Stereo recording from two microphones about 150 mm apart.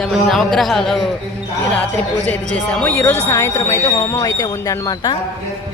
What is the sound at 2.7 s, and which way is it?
Speech, 10° left (ahead or behind).